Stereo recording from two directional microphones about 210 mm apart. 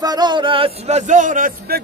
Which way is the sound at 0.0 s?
20° right (ahead or behind).